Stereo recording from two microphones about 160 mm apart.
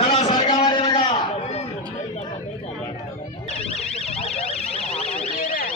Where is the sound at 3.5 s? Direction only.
40° left (ahead or behind).